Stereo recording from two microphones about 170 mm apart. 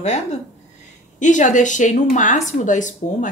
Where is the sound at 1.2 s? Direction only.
45° left (ahead or behind).